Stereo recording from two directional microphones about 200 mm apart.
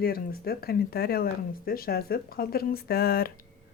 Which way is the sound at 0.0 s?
50° left (ahead or behind).